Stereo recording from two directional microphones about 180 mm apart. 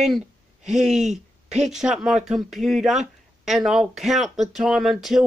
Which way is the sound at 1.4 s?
40° right (ahead or behind).